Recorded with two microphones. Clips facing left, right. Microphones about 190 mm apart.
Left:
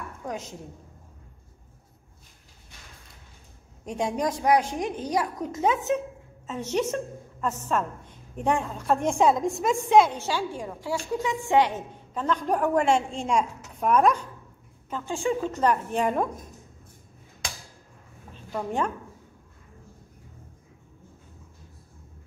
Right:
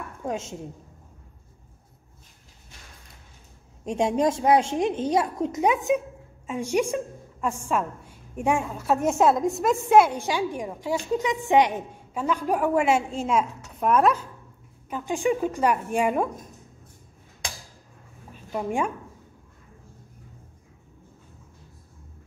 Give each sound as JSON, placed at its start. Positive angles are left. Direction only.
{"t": 0.2, "sound": "a woman's voice", "side_deg": -25}
{"t": 3.8, "sound": "a child's voice", "side_deg": -25}
{"t": 14.9, "sound": "a woman's voice", "side_deg": -15}
{"t": 18.5, "sound": "a woman's voice", "side_deg": -15}